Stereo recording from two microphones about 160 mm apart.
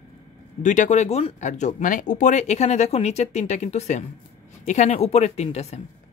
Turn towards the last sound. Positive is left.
turn(degrees=40)  # may be behind; listen again after turning